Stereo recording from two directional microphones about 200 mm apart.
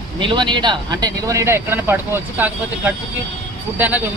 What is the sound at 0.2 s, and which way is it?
Speech, 25° right (ahead or behind).